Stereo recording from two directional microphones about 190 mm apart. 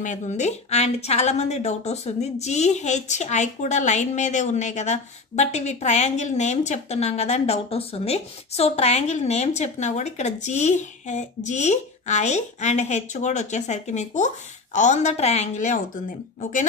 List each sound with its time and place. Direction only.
0.0 s a woman's voice: 40° left (ahead or behind)